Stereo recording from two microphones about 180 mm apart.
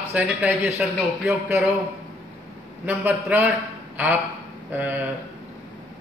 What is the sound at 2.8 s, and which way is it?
Speech, 10° right (ahead or behind).